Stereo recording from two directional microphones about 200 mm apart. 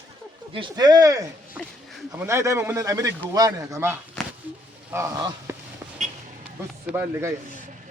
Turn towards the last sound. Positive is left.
turn(degrees=-10)  # may be behind; listen again after turning